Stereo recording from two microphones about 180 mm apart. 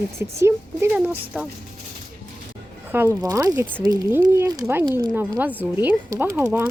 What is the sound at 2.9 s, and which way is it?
Speech, 15° right (ahead or behind).